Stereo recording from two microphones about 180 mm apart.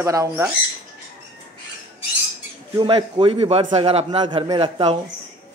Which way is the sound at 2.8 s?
25° right (ahead or behind).